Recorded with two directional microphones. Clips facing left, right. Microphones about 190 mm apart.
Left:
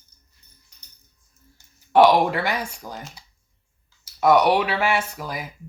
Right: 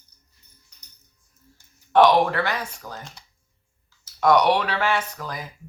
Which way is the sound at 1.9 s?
10° left (ahead or behind).